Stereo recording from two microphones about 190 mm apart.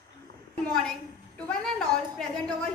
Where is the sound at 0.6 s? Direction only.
5° left (ahead or behind).